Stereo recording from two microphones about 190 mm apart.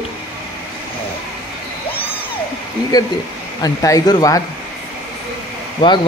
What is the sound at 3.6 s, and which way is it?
Speech, 20° left (ahead or behind).